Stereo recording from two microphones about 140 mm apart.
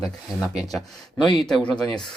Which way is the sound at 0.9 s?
30° left (ahead or behind).